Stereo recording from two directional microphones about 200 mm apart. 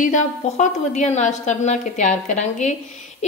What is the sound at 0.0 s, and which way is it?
A woman's voice, 35° left (ahead or behind).